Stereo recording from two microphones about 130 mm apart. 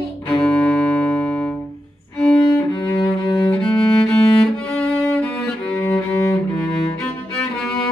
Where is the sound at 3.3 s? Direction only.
30° left (ahead or behind).